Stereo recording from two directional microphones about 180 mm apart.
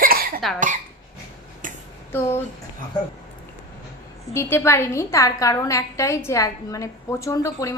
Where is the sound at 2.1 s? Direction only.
15° left (ahead or behind).